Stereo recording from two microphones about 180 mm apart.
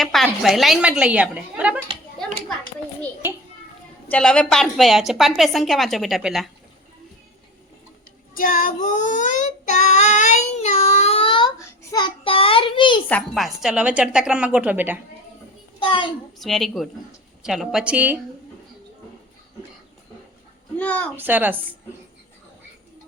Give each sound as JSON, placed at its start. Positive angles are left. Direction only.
{"t": 0.0, "sound": "a woman's voice", "side_deg": 0}
{"t": 2.2, "sound": "a sound", "side_deg": 0}
{"t": 4.1, "sound": "a woman's voice", "side_deg": 5}
{"t": 8.4, "sound": "child singing", "side_deg": 50}
{"t": 13.1, "sound": "a woman's voice", "side_deg": 5}
{"t": 15.8, "sound": "a sound", "side_deg": 30}
{"t": 16.4, "sound": "a woman's voice", "side_deg": 0}
{"t": 20.7, "sound": "a woman's voice", "side_deg": 10}
{"t": 21.2, "sound": "speech", "side_deg": -10}